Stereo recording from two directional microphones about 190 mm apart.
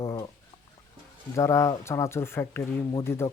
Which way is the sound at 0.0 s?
25° left (ahead or behind).